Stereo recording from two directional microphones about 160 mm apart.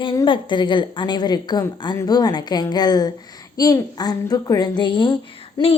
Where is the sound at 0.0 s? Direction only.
30° left (ahead or behind).